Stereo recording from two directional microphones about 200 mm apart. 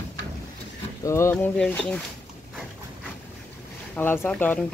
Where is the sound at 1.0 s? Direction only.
15° left (ahead or behind).